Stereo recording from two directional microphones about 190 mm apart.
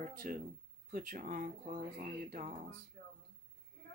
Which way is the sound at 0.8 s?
45° right (ahead or behind).